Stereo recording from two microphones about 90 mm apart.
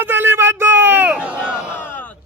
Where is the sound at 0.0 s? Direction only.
25° right (ahead or behind).